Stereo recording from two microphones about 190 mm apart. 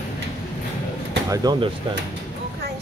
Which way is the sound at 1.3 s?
20° right (ahead or behind).